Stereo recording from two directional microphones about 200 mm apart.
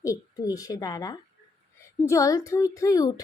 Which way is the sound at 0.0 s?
15° left (ahead or behind).